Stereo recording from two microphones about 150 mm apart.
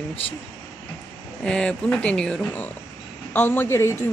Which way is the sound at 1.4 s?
5° left (ahead or behind).